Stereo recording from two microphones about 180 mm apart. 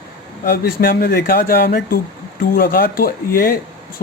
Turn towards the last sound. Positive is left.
turn(degrees=55)  # may be behind; listen again after turning